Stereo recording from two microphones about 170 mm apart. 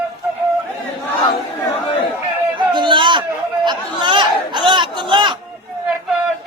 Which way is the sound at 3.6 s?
25° right (ahead or behind).